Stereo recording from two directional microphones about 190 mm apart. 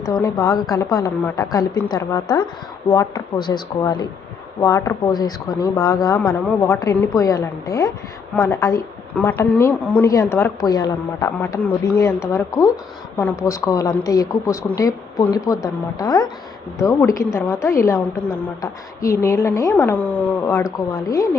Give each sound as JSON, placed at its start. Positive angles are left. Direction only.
{"t": 0.0, "sound": "a woman's voice", "side_deg": 20}